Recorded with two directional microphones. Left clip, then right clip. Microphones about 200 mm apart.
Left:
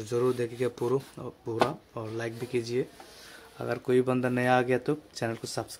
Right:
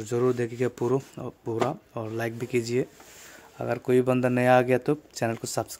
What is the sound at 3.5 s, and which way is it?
Speech, 30° right (ahead or behind).